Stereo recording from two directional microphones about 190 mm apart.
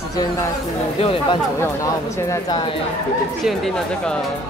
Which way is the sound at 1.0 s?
30° left (ahead or behind).